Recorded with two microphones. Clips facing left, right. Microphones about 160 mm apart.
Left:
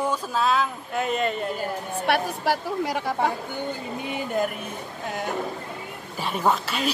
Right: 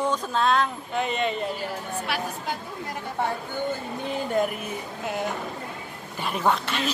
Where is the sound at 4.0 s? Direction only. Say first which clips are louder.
Right 1 dB; centre (ahead or behind).